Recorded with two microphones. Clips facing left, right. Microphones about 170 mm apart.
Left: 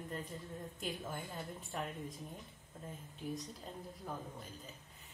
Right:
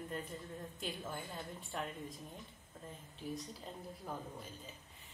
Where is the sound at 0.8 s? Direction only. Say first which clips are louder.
Left 1 dB; centre (ahead or behind).